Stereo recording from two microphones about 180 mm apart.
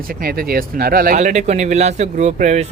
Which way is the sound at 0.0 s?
55° right (ahead or behind).